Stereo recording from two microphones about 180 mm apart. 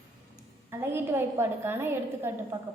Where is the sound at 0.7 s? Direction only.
15° right (ahead or behind).